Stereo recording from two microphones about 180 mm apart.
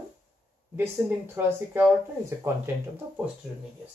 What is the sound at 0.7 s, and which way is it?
Speech, 10° right (ahead or behind).